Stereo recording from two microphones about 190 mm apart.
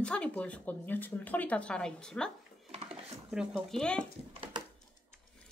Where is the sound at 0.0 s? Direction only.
5° left (ahead or behind).